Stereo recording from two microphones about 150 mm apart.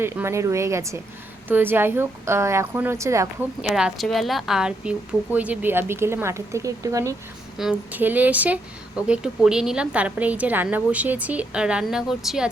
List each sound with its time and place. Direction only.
0.0 s a woman's voice: 15° right (ahead or behind)
3.6 s a woman's voice: 5° right (ahead or behind); by 7.2 s 20° right (ahead or behind)
7.6 s a woman's voice: 5° right (ahead or behind)